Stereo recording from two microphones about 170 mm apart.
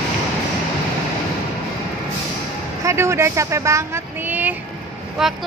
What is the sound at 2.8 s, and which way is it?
Speech, 15° right (ahead or behind).